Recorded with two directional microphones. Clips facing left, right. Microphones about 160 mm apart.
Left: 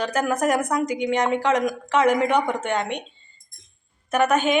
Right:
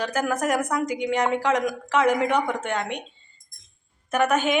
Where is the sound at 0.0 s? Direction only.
5° right (ahead or behind).